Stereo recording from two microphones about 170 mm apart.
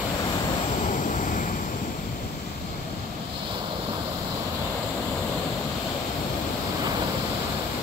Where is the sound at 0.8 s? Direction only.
50° left (ahead or behind).